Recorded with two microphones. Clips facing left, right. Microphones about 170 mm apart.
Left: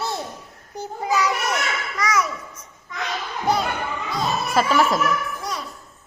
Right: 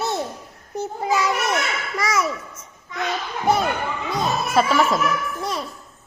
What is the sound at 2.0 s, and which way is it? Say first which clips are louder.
Speech: right 1 dB; 25° right (ahead or behind).